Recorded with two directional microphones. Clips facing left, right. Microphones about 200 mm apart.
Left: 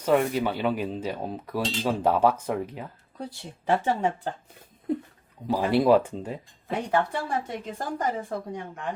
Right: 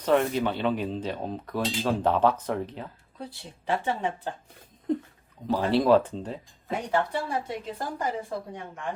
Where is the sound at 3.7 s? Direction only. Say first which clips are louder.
Left 4 dB; 45° left (ahead or behind).